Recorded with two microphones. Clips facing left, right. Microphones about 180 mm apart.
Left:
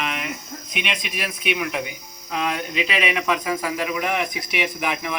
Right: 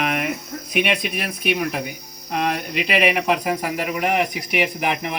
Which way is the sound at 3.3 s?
45° right (ahead or behind).